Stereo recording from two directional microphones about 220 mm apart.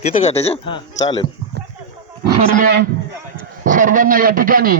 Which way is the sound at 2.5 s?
40° right (ahead or behind).